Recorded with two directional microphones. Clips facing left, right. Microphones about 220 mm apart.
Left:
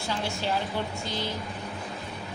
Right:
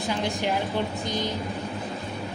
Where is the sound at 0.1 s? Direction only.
15° right (ahead or behind).